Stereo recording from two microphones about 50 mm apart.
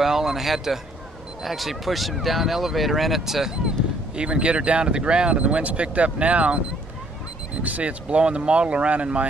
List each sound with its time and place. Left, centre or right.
0.0 s speech: centre
4.2 s speech: right
7.6 s speech: right